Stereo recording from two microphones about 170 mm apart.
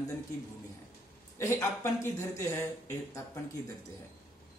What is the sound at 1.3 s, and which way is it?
Speech, 15° left (ahead or behind).